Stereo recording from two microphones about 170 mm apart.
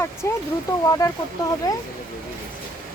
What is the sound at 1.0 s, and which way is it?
Speech, 20° left (ahead or behind).